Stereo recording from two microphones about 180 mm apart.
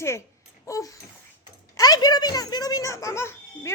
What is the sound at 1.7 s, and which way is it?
A child's voice, 20° left (ahead or behind).